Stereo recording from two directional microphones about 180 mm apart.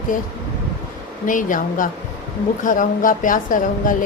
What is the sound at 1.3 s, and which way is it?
Speech, 45° left (ahead or behind).